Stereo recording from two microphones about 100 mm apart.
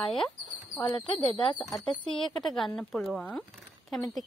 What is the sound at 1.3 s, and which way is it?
Speech, 55° left (ahead or behind).